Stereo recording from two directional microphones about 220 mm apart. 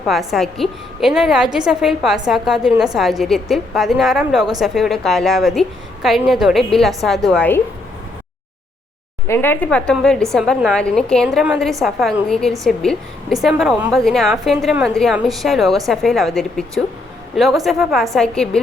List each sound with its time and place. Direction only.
0.0 s a woman's voice: centre (ahead or behind)
9.2 s a woman's voice: 10° left (ahead or behind)